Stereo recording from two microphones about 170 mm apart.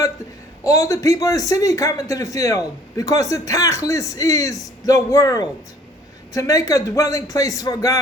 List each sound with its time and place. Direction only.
0.6 s a man's voice: 20° left (ahead or behind)